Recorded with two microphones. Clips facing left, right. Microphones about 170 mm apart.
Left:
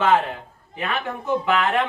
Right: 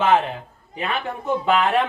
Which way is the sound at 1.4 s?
25° right (ahead or behind).